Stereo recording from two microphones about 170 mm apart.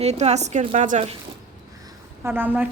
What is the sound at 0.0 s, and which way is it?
A woman's voice, 40° right (ahead or behind).